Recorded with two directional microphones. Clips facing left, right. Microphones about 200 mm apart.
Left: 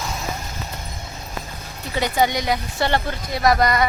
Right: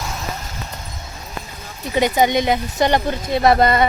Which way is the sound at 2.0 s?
20° right (ahead or behind).